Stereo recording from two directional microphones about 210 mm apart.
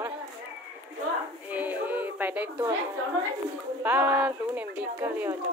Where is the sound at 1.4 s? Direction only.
10° right (ahead or behind).